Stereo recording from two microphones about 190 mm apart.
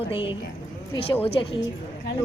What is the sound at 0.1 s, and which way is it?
Speech, 25° left (ahead or behind).